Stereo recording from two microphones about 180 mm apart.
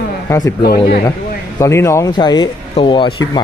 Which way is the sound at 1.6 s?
15° left (ahead or behind).